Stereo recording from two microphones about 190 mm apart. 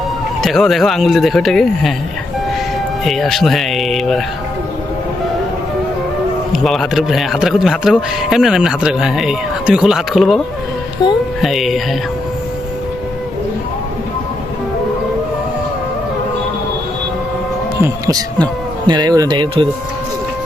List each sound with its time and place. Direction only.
0.4 s a man's voice: centre (ahead or behind)
3.0 s a man's voice: centre (ahead or behind)
6.5 s a man's voice: centre (ahead or behind)
17.8 s speech: 20° right (ahead or behind)